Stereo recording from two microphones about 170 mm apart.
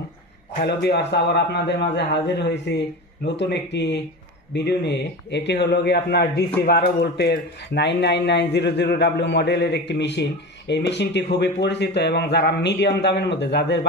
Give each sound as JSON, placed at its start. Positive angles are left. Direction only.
{"t": 0.7, "sound": "a man's voice", "side_deg": 75}
{"t": 11.3, "sound": "a man's voice", "side_deg": 80}